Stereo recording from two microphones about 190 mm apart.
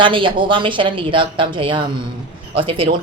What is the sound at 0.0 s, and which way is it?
Speech, 25° right (ahead or behind).